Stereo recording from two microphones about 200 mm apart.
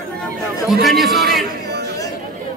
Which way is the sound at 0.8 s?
Centre (ahead or behind).